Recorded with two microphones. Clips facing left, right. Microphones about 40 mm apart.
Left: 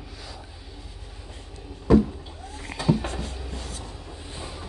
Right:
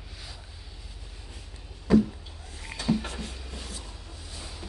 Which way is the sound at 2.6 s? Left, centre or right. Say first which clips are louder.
Left 4 dB; centre.